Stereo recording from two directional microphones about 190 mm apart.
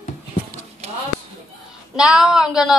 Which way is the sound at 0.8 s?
35° right (ahead or behind).